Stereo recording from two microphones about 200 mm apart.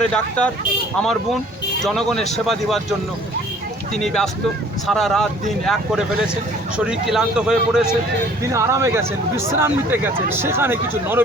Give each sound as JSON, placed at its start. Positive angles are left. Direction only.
{"t": 0.0, "sound": "speech", "side_deg": 5}
{"t": 3.9, "sound": "speech", "side_deg": 0}
{"t": 8.4, "sound": "speech", "side_deg": -15}